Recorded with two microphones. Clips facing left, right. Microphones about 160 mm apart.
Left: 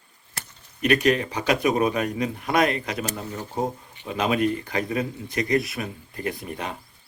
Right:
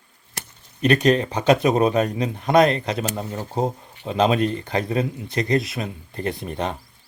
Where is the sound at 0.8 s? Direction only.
35° right (ahead or behind).